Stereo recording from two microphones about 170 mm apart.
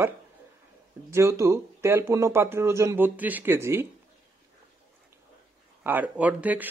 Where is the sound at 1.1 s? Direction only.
15° right (ahead or behind).